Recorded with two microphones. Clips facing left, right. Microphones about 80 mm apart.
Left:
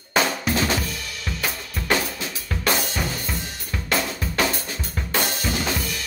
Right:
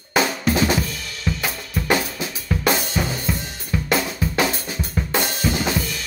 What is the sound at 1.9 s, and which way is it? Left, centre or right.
Drum kit, centre.